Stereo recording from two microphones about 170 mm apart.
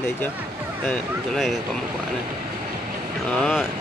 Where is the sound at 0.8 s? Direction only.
5° left (ahead or behind).